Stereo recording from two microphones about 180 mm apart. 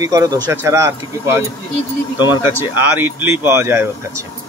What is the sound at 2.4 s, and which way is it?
Speech, 10° right (ahead or behind).